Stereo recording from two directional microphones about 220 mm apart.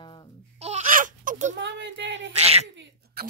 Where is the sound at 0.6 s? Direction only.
30° right (ahead or behind).